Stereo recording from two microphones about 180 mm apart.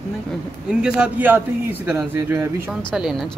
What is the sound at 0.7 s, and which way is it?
Speech, 5° right (ahead or behind).